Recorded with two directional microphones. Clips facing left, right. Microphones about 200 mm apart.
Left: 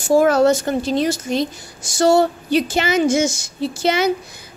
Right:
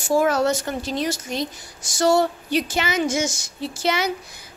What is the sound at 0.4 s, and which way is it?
Speech, 30° left (ahead or behind).